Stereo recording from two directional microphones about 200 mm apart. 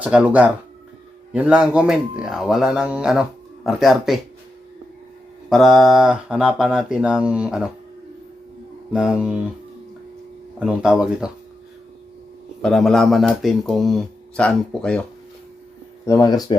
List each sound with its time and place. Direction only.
0.0 s speech: 5° right (ahead or behind)
5.5 s speech: centre (ahead or behind)
8.9 s speech: 5° right (ahead or behind)
10.6 s speech: 5° right (ahead or behind)
12.6 s speech: centre (ahead or behind)
16.0 s speech: 15° left (ahead or behind)